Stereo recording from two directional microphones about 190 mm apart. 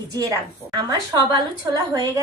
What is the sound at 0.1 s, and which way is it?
A woman's voice, 20° right (ahead or behind).